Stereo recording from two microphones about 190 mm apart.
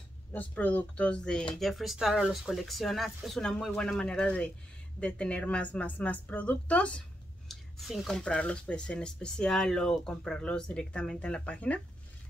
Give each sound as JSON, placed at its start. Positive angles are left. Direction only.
{"t": 0.3, "sound": "a woman's voice", "side_deg": 10}